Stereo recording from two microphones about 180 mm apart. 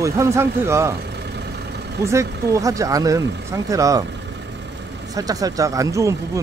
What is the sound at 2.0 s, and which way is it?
Speech, 15° right (ahead or behind).